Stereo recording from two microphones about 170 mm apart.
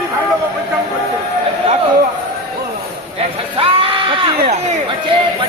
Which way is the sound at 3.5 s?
30° right (ahead or behind).